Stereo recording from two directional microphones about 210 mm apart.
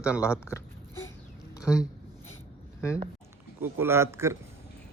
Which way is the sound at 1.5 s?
15° left (ahead or behind).